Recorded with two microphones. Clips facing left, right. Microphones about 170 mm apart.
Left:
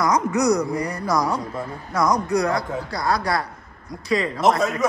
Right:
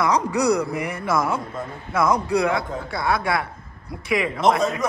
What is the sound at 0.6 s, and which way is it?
Speech, 25° right (ahead or behind).